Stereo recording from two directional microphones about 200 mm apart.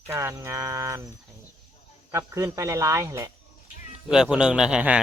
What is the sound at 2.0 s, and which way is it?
Speech, 15° right (ahead or behind).